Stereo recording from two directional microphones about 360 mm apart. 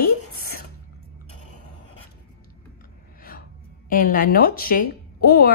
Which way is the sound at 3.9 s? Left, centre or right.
Left.